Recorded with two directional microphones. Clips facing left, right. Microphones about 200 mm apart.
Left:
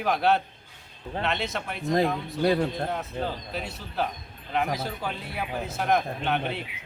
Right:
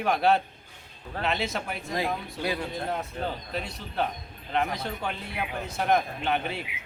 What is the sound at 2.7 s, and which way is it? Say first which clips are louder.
Speech: left 1 dB; centre (ahead or behind).